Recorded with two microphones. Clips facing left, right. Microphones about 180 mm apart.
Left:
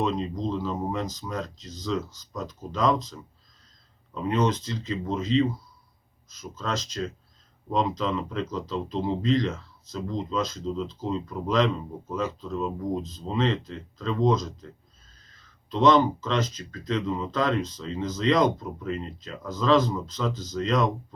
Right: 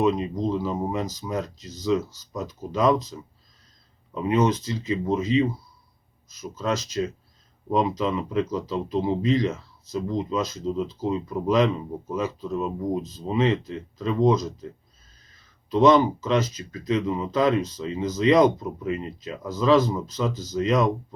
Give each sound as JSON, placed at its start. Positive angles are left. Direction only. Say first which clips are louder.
{"t": 0.0, "sound": "speech", "louder": "right 4 dB", "side_deg": -10}
{"t": 15.7, "sound": "speech", "louder": "right 3 dB", "side_deg": -10}